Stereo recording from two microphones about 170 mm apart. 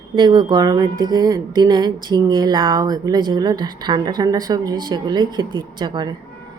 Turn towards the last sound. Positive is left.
turn(degrees=-25)  # may be behind; listen again after turning